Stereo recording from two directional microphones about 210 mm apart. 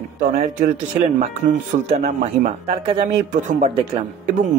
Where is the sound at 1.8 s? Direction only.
30° right (ahead or behind).